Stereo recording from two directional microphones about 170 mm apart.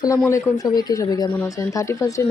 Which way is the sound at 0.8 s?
25° left (ahead or behind).